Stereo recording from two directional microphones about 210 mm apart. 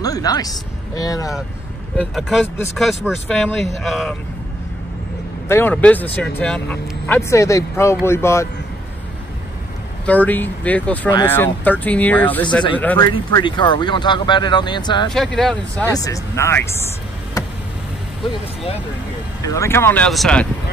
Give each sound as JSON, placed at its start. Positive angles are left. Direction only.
{"t": 0.0, "sound": "speech", "side_deg": 15}
{"t": 2.0, "sound": "speech", "side_deg": 0}
{"t": 5.5, "sound": "speech", "side_deg": 10}
{"t": 10.0, "sound": "speech", "side_deg": 5}
{"t": 13.0, "sound": "speech", "side_deg": 20}
{"t": 15.0, "sound": "speech", "side_deg": 0}
{"t": 15.8, "sound": "speech", "side_deg": 15}
{"t": 19.4, "sound": "speech", "side_deg": 15}